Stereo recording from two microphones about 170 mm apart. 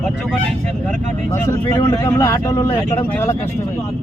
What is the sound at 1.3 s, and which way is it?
Speech, 15° left (ahead or behind).